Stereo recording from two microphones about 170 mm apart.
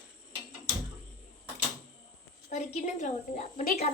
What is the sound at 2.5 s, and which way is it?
A woman's voice, 45° left (ahead or behind).